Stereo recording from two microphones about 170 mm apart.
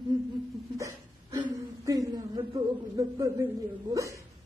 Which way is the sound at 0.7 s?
20° right (ahead or behind).